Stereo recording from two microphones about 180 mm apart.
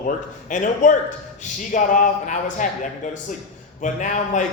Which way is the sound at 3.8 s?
45° left (ahead or behind).